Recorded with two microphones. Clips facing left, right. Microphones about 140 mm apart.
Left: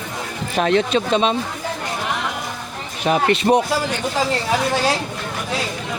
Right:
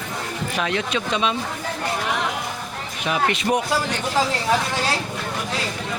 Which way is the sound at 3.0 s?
35° left (ahead or behind).